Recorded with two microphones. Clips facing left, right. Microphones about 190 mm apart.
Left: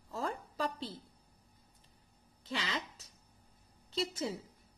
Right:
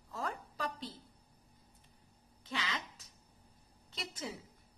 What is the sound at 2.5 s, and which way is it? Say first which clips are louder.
Speech: left 2 dB; 30° left (ahead or behind).